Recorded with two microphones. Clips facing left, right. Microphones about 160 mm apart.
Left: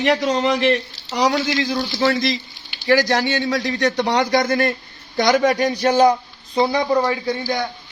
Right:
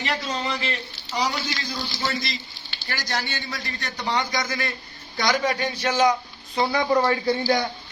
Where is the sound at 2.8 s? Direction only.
90° left; by 6.2 s 35° left (ahead or behind).